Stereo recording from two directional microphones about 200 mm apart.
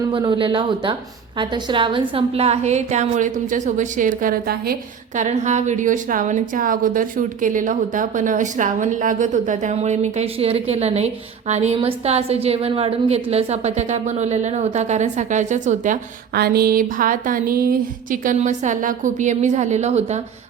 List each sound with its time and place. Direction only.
0.1 s a woman's voice: 25° right (ahead or behind)